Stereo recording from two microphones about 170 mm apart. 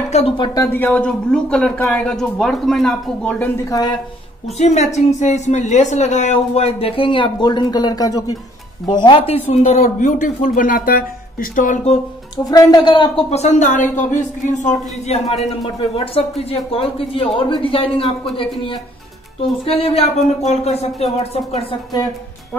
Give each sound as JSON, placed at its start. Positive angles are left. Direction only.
{"t": 0.1, "sound": "a man's voice", "side_deg": 35}
{"t": 0.7, "sound": "speech", "side_deg": 10}
{"t": 4.6, "sound": "a man's voice", "side_deg": 40}
{"t": 12.4, "sound": "a man's voice", "side_deg": 25}